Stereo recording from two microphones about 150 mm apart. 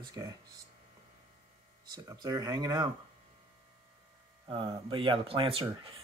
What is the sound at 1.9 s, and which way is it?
Speech, 25° right (ahead or behind).